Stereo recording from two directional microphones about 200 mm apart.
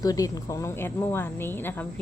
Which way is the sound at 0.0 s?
20° left (ahead or behind).